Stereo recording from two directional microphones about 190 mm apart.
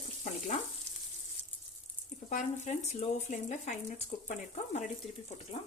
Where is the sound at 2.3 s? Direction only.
40° left (ahead or behind).